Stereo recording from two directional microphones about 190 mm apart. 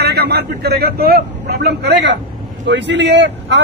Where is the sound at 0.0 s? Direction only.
60° right (ahead or behind).